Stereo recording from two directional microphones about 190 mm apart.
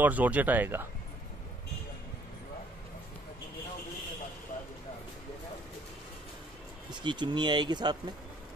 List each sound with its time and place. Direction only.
0.0 s speech: 10° right (ahead or behind)
6.9 s speech: 25° right (ahead or behind)